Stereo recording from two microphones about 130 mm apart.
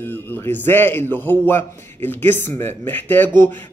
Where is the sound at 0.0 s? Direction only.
15° left (ahead or behind).